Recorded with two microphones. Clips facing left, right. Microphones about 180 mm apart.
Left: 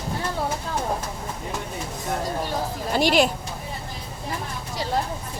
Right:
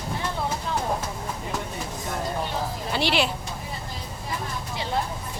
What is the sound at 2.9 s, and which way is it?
Speech, 45° left (ahead or behind).